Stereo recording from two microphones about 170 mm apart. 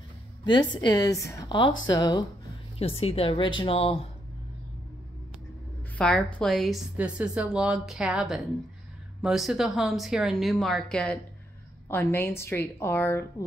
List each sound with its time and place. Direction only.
0.7 s a woman's voice: 20° left (ahead or behind)
2.8 s a woman's voice: 35° left (ahead or behind)
5.9 s a woman's voice: 5° left (ahead or behind)